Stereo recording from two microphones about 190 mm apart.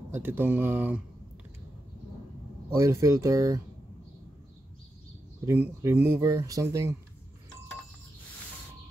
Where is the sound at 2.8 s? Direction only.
15° right (ahead or behind).